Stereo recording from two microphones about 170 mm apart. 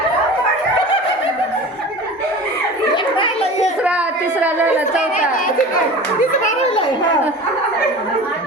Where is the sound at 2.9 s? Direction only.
30° left (ahead or behind).